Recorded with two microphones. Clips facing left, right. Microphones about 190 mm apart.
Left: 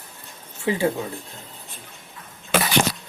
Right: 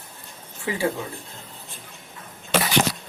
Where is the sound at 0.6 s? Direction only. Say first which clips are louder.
Left 3 dB; 20° left (ahead or behind).